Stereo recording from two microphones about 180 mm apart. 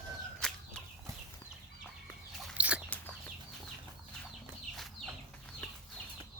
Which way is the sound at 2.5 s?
5° right (ahead or behind).